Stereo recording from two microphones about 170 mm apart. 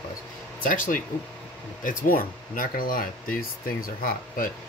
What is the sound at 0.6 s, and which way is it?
Speech, 50° left (ahead or behind).